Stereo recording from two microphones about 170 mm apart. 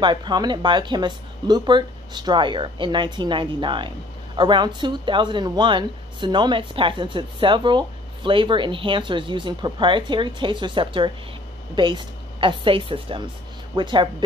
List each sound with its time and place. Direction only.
0.0 s a woman's voice: 25° right (ahead or behind)